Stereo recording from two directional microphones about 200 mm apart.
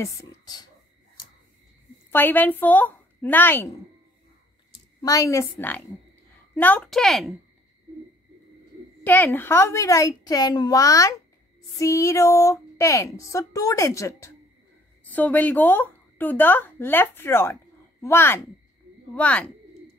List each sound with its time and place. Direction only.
0.0 s a woman's voice: 15° left (ahead or behind)
2.0 s a woman's voice: 10° left (ahead or behind)
5.0 s a woman's voice: 15° left (ahead or behind); by 7.3 s centre (ahead or behind)
9.0 s a woman's voice: 10° left (ahead or behind)